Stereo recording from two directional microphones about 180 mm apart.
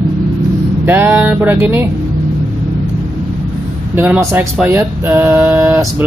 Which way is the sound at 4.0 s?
15° right (ahead or behind).